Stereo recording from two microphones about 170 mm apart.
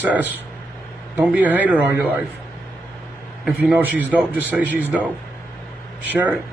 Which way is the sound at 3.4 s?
5° right (ahead or behind).